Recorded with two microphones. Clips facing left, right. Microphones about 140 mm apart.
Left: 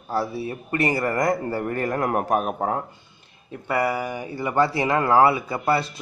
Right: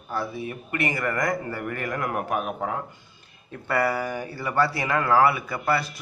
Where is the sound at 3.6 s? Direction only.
20° left (ahead or behind).